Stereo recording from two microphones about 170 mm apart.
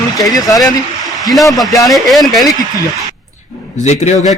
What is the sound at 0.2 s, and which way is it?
Speech, 20° left (ahead or behind).